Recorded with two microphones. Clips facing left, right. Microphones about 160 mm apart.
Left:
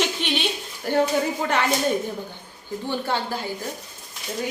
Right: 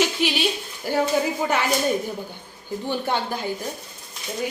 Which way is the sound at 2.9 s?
15° right (ahead or behind).